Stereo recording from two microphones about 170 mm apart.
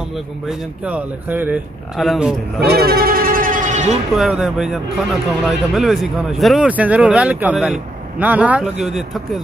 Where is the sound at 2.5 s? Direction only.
65° right (ahead or behind); by 3.9 s 45° right (ahead or behind).